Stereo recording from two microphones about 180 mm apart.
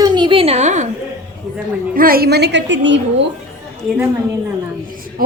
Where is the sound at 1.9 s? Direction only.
55° right (ahead or behind); by 3.2 s 90° right.